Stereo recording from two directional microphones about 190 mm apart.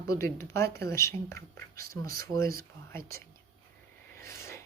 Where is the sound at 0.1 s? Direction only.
15° left (ahead or behind).